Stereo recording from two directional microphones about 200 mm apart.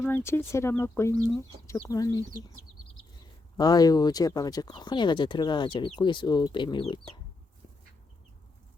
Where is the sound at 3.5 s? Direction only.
20° left (ahead or behind).